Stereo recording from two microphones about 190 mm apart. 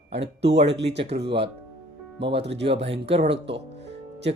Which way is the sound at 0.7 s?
65° right (ahead or behind).